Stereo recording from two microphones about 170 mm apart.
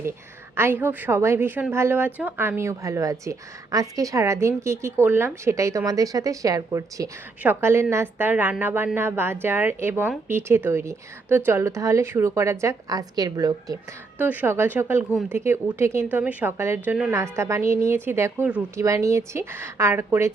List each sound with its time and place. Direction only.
0.5 s a woman's voice: 15° right (ahead or behind)
14.2 s a woman's voice: 10° right (ahead or behind)